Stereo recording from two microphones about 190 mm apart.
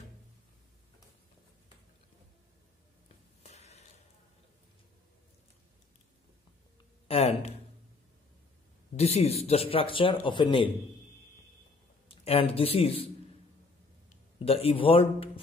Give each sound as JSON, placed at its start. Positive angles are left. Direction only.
{"t": 3.4, "sound": "a sound", "side_deg": 35}
{"t": 7.1, "sound": "speech", "side_deg": 30}
{"t": 8.9, "sound": "speech", "side_deg": 35}
{"t": 12.1, "sound": "speech", "side_deg": 30}
{"t": 14.0, "sound": "speech", "side_deg": 30}